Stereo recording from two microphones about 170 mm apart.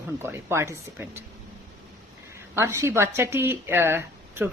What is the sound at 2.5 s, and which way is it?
Speech, 15° right (ahead or behind).